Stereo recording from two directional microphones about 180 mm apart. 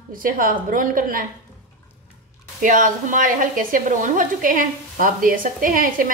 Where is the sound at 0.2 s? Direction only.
50° right (ahead or behind).